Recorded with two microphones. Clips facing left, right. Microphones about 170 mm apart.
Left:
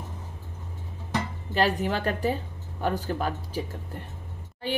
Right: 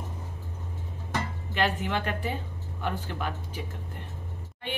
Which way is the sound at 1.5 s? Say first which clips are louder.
Left 3 dB; 40° left (ahead or behind).